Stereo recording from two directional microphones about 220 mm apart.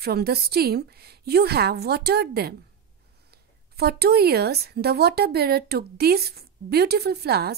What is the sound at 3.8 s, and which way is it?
A woman's voice, 45° right (ahead or behind).